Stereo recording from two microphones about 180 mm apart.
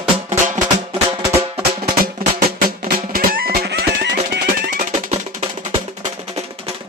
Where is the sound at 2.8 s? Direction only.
55° right (ahead or behind).